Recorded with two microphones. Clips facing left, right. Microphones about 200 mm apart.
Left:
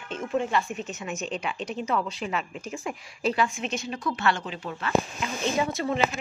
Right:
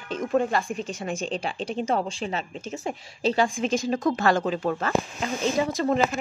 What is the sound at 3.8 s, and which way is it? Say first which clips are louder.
A woman's voice: right 4 dB; 45° right (ahead or behind).